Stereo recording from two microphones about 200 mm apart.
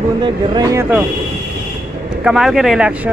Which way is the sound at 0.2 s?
20° right (ahead or behind).